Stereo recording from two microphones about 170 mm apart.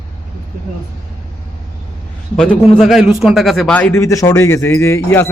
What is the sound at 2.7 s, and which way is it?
A man's voice, centre (ahead or behind).